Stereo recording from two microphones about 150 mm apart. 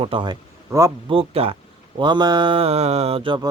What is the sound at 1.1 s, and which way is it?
Mantra, 40° right (ahead or behind).